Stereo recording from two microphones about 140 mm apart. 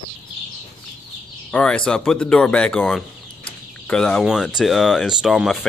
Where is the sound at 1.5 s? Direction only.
10° left (ahead or behind).